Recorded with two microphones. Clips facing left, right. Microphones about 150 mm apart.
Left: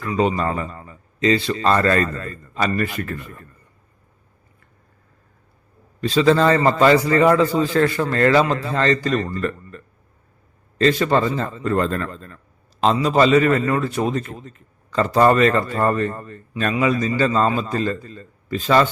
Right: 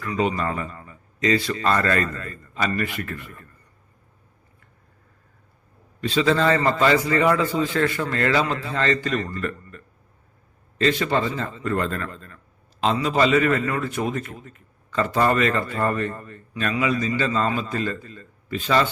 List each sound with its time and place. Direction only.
0.0 s a man's voice: 30° left (ahead or behind)
6.0 s a man's voice: 40° left (ahead or behind)